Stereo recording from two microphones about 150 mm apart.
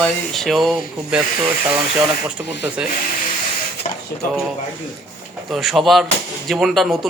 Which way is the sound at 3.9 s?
55° left (ahead or behind).